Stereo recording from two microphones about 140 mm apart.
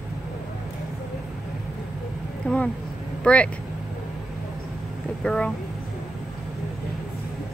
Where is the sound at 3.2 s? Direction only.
10° left (ahead or behind).